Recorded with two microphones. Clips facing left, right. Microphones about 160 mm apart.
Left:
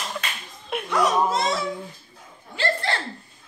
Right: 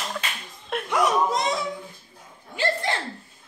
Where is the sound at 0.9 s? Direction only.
15° right (ahead or behind).